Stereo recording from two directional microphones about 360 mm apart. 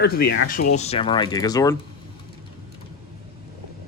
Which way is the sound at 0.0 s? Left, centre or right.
Left.